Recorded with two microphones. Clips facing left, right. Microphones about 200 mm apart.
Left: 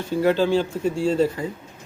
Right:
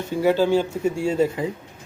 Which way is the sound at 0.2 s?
10° right (ahead or behind).